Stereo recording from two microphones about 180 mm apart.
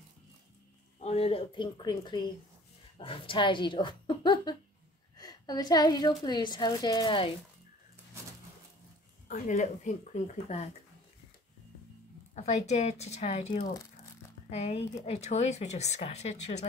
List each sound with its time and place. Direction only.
0.9 s a woman's voice: 35° left (ahead or behind)
9.3 s speech: 45° left (ahead or behind)
12.4 s speech: 40° left (ahead or behind)